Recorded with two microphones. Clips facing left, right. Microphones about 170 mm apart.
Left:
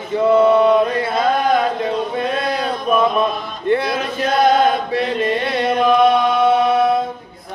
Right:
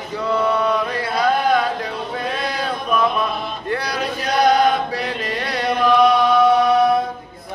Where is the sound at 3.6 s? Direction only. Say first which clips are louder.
Left 9 dB; 25° left (ahead or behind).